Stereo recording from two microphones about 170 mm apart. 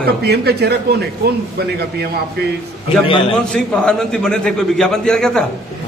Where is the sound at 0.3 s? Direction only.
75° right (ahead or behind).